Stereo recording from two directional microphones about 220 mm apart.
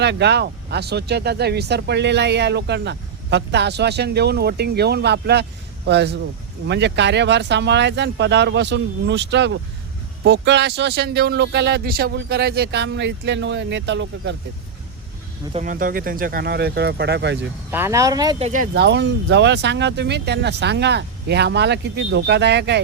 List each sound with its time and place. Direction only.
0.0 s speech: 50° right (ahead or behind)
15.5 s speech: 35° right (ahead or behind)
17.7 s speech: 10° right (ahead or behind)
18.4 s speech: 35° right (ahead or behind)